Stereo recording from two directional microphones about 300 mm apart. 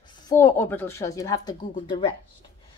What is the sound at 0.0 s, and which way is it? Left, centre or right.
Speech, centre.